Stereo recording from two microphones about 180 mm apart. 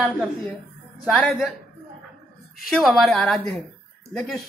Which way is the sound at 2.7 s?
Centre (ahead or behind).